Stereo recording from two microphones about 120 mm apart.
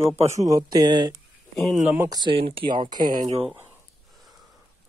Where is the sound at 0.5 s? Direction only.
35° right (ahead or behind).